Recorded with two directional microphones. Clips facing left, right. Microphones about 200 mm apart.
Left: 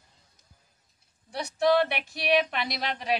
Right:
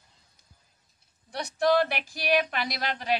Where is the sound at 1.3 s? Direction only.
5° left (ahead or behind).